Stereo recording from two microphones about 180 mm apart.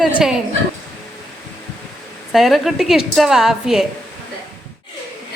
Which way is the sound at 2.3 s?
Centre (ahead or behind).